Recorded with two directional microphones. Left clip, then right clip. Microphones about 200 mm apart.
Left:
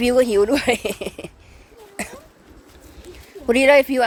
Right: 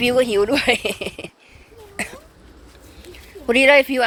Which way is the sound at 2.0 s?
10° left (ahead or behind).